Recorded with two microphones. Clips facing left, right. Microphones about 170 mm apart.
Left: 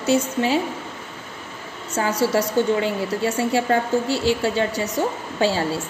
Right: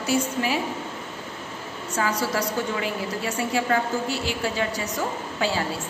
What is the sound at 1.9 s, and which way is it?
A woman's voice, 25° left (ahead or behind).